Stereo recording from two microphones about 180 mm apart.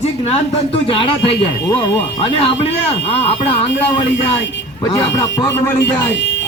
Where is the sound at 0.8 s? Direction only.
30° left (ahead or behind).